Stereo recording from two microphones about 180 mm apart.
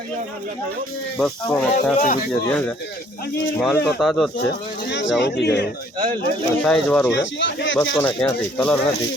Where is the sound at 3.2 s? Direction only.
65° left (ahead or behind).